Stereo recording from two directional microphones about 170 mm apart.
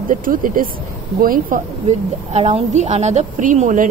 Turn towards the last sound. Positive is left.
turn(degrees=-50)  # may be behind; listen again after turning